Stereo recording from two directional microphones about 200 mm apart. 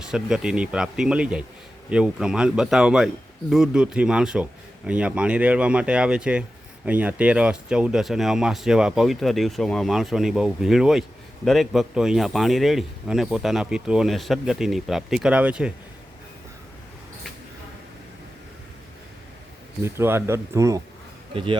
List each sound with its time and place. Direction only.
0.1 s a man's voice: 5° right (ahead or behind)
19.8 s speech: 10° right (ahead or behind)
21.3 s speech: 25° right (ahead or behind)